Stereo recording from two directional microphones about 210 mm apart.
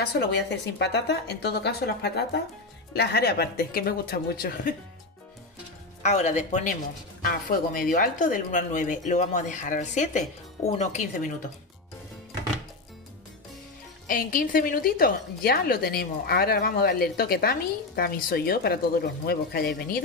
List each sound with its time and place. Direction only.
0.0 s a woman's voice: 50° left (ahead or behind)
6.0 s speech: 35° left (ahead or behind)
14.0 s a woman's voice: 40° left (ahead or behind)